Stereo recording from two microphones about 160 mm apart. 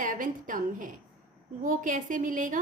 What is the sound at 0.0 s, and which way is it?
A woman's voice, 55° right (ahead or behind).